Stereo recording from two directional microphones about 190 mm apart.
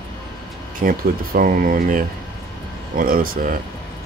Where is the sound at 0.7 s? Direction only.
45° right (ahead or behind).